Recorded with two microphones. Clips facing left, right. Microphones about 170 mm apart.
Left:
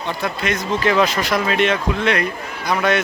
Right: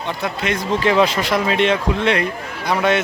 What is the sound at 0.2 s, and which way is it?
Speech, 30° right (ahead or behind).